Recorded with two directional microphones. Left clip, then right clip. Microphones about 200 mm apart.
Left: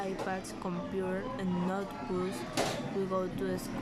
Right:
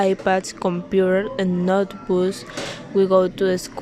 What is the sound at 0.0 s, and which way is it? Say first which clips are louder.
Speech: right 17 dB; 45° right (ahead or behind).